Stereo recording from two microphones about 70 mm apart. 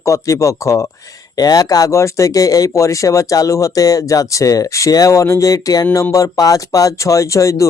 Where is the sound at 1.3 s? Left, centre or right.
Left.